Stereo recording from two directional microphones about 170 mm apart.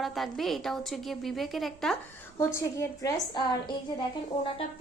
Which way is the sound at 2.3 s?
15° left (ahead or behind).